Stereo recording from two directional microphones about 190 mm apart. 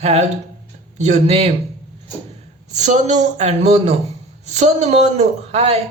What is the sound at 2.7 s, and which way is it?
A man's voice, 40° right (ahead or behind).